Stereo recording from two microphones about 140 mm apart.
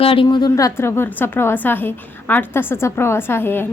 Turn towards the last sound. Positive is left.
turn(degrees=15)  # may be behind; listen again after turning